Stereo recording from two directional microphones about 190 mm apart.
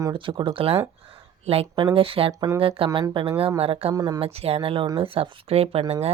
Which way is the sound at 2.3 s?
15° right (ahead or behind).